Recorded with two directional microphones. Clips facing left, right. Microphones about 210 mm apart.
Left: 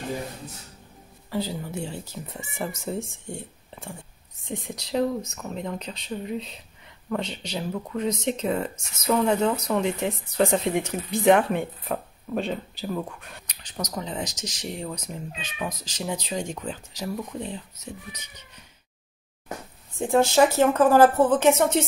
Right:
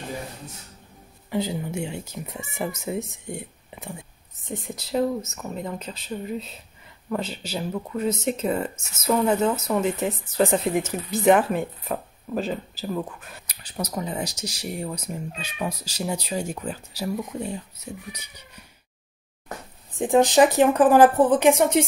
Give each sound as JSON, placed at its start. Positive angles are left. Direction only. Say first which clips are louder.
{"t": 1.3, "sound": "speech", "louder": "right 3 dB", "side_deg": -15}
{"t": 20.0, "sound": "speech", "louder": "right 2 dB", "side_deg": -15}